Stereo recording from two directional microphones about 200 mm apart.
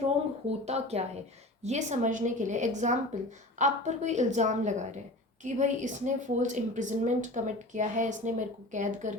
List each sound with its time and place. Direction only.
0.6 s speech: 30° right (ahead or behind)